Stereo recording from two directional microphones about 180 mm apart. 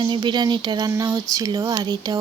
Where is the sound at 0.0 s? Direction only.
25° right (ahead or behind).